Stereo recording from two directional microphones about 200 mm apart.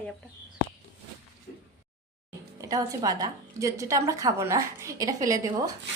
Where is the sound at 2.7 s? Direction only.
15° right (ahead or behind).